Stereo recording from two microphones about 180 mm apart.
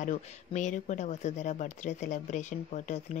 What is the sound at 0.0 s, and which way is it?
Speech, 45° left (ahead or behind).